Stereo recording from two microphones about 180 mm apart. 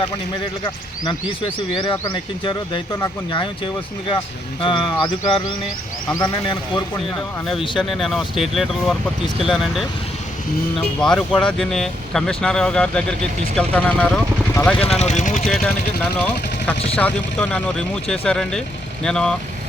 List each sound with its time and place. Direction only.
1.7 s speech: 25° left (ahead or behind)
7.8 s speech: centre (ahead or behind)
14.8 s speech: 35° left (ahead or behind)
15.4 s speech: centre (ahead or behind)